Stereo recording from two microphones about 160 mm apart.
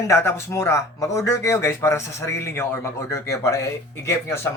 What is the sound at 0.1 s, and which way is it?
Speech, 15° left (ahead or behind).